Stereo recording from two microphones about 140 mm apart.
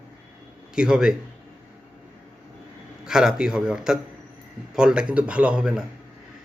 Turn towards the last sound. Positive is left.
turn(degrees=-5)  # may be behind; listen again after turning